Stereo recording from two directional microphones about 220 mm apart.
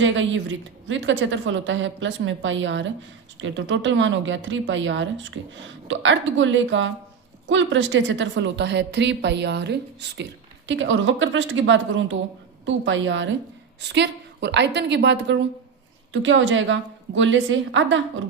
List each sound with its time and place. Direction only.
0.0 s a woman's voice: 60° right (ahead or behind)